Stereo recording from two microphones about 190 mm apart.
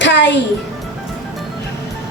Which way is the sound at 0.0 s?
65° left (ahead or behind).